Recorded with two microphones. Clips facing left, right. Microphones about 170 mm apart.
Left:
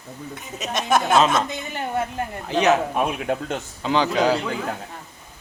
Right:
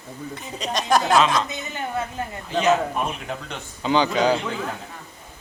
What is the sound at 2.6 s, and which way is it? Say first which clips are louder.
Speech: left 1 dB; 55° left (ahead or behind).